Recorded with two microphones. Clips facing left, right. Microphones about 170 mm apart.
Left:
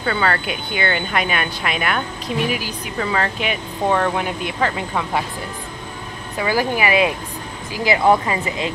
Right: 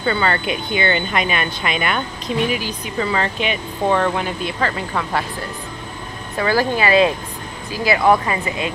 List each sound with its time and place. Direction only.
0.0 s speech: centre (ahead or behind)
6.3 s speech: 15° left (ahead or behind)